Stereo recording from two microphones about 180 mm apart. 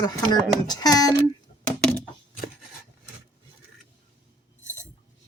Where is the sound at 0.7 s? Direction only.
20° left (ahead or behind).